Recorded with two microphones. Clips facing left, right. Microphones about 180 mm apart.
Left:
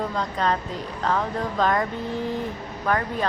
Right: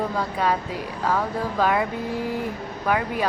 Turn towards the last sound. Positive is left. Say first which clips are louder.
# right 1 dB
turn(degrees=-10)  # may be behind; listen again after turning